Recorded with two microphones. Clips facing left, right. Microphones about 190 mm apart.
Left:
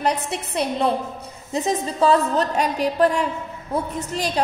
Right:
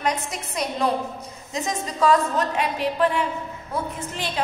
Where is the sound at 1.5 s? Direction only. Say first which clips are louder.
Left 5 dB; 30° left (ahead or behind).